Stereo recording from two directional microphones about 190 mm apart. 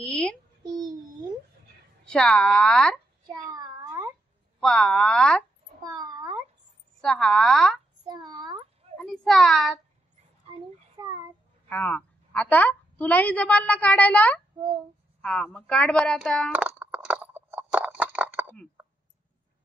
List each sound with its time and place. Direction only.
0.1 s a sound: 5° left (ahead or behind)
0.7 s babbling: 20° right (ahead or behind)
2.0 s a woman's voice: 5° left (ahead or behind)
3.3 s a sound: 20° right (ahead or behind)
4.6 s a woman's voice: centre (ahead or behind)
5.9 s cat: 20° right (ahead or behind)
7.0 s a woman's voice: 5° left (ahead or behind)
8.1 s a sound: 20° right (ahead or behind)
8.9 s child singing: centre (ahead or behind)
11.7 s a woman's voice: 10° left (ahead or behind)
16.5 s biting: 10° right (ahead or behind)